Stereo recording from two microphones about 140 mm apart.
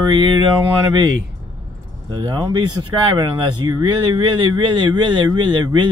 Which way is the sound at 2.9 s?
35° right (ahead or behind).